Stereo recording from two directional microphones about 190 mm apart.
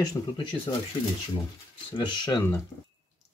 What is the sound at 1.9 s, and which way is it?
Speech, 25° left (ahead or behind).